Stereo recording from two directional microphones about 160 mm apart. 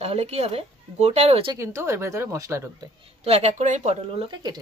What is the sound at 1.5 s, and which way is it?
Speech, 20° right (ahead or behind).